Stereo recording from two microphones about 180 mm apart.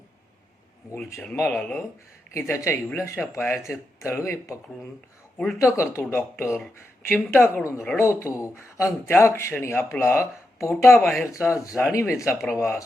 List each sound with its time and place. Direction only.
0.9 s speech: 5° left (ahead or behind)
10.8 s speech: centre (ahead or behind)
11.4 s speech: 15° left (ahead or behind)